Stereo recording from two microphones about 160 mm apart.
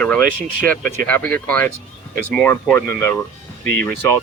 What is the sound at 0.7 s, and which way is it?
Speech, 10° left (ahead or behind).